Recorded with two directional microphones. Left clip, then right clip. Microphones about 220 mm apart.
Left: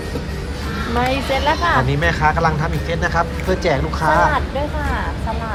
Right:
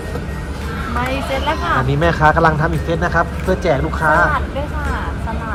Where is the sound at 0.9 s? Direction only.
45° left (ahead or behind).